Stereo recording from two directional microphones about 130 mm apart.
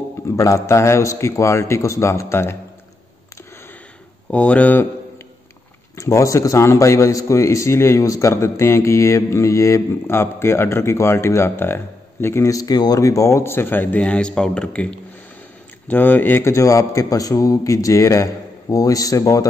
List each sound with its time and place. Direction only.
0.4 s a man's voice: 25° left (ahead or behind)
4.3 s speech: 10° left (ahead or behind)
5.9 s a man's voice: 25° left (ahead or behind)